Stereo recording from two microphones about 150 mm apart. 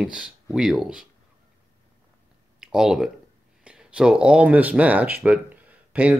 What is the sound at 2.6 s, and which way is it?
Speech, 5° right (ahead or behind).